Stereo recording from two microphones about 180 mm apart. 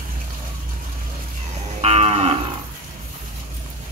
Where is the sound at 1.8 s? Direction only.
35° right (ahead or behind).